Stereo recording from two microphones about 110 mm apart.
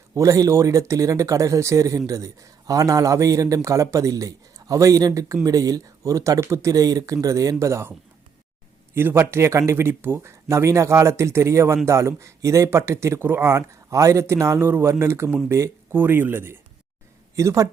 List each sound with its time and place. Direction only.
0.1 s speech: 30° right (ahead or behind)
9.0 s speech: 20° right (ahead or behind)